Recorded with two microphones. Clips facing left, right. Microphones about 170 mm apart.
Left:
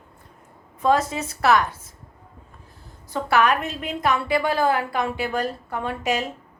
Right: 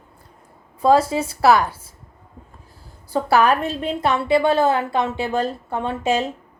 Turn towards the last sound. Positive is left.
turn(degrees=-25)  # may be behind; listen again after turning